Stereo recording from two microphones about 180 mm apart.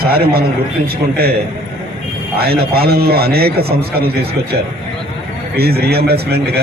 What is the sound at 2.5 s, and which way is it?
A man's voice, 60° right (ahead or behind).